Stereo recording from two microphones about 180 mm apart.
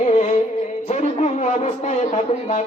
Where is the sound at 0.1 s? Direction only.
40° left (ahead or behind).